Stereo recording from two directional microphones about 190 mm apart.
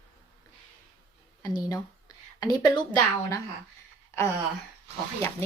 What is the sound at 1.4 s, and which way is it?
A woman's voice, 20° left (ahead or behind).